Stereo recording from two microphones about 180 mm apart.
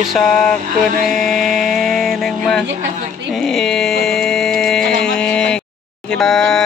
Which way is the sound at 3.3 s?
Centre (ahead or behind).